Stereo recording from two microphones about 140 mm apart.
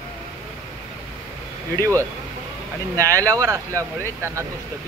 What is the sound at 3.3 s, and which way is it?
Speech, 25° right (ahead or behind).